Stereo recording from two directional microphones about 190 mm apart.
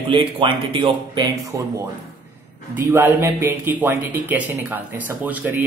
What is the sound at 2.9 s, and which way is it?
Speech, 10° right (ahead or behind).